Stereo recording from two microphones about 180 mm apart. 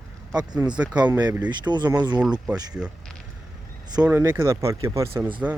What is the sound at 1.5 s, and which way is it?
Speech, 25° right (ahead or behind).